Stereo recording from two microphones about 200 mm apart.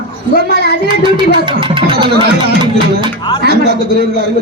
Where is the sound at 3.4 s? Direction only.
50° right (ahead or behind).